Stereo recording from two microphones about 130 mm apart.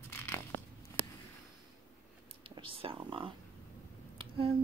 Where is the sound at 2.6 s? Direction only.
45° right (ahead or behind).